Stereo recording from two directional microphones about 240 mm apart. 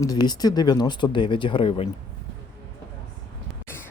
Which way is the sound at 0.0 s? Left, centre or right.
Centre.